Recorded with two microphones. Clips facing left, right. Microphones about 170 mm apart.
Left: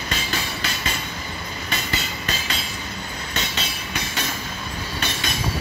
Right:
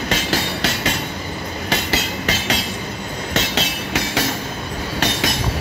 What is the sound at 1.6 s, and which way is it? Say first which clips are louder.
Train: right 7 dB; 80° right.